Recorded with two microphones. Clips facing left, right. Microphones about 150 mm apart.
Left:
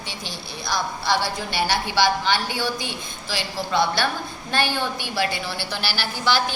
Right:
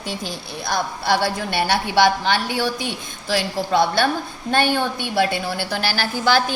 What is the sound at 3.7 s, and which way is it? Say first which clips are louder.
A woman's voice: right 4 dB; 50° right (ahead or behind).